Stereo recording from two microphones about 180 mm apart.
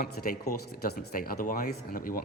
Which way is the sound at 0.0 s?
55° left (ahead or behind).